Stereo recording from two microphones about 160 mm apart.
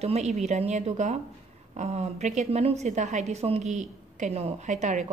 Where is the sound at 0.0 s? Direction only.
40° right (ahead or behind).